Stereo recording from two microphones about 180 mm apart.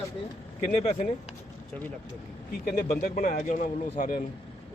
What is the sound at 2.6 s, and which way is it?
Speech, 55° left (ahead or behind).